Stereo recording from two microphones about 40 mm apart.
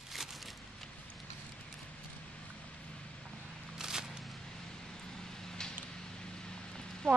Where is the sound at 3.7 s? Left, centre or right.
Centre.